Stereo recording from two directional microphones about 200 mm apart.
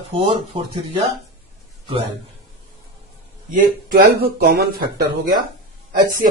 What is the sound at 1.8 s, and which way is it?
Speech, 25° right (ahead or behind).